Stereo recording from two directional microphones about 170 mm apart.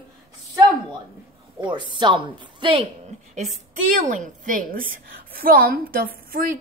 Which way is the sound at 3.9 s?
45° right (ahead or behind).